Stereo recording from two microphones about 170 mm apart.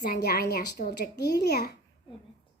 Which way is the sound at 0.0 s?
70° left (ahead or behind).